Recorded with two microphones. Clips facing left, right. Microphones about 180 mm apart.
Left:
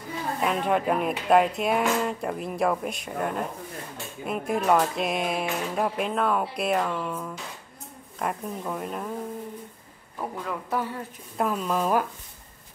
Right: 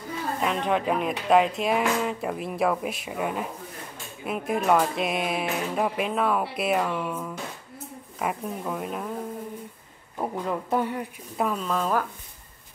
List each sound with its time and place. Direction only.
0.4 s speech: 5° left (ahead or behind)
10.1 s a man's voice: 25° right (ahead or behind)
11.3 s speech: centre (ahead or behind)